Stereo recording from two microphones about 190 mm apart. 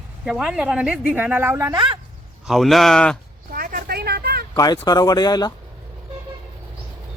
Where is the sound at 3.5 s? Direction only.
50° right (ahead or behind).